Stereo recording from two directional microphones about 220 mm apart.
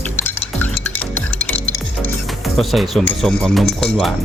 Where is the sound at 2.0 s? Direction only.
Centre (ahead or behind).